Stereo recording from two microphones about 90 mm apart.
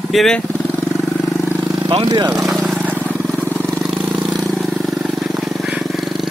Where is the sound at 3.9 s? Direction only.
15° right (ahead or behind).